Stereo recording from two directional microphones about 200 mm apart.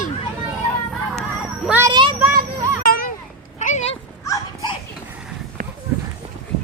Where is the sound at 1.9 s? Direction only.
25° right (ahead or behind).